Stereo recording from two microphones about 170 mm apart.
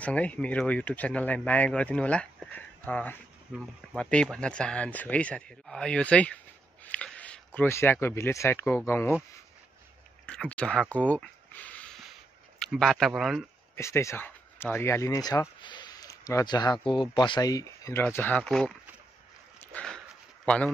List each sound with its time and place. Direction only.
0.0 s speech: 10° left (ahead or behind)
10.2 s a sound: 5° left (ahead or behind)
12.5 s speech: 5° left (ahead or behind)
13.7 s speech: 15° left (ahead or behind)
15.6 s a sound: 25° left (ahead or behind)
16.8 s speech: 30° left (ahead or behind); by 18.7 s 5° left (ahead or behind)
19.6 s dog: 5° left (ahead or behind)
20.4 s speech: 5° left (ahead or behind)